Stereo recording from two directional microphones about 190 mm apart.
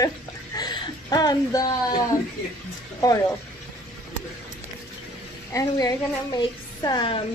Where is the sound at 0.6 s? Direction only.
20° left (ahead or behind).